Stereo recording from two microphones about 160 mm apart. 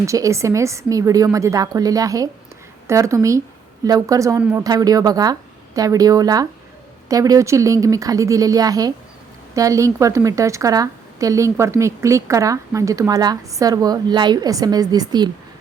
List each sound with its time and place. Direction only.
0.0 s a woman's voice: 20° right (ahead or behind)